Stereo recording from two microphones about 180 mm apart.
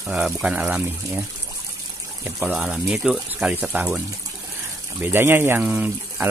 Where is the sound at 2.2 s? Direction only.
5° right (ahead or behind).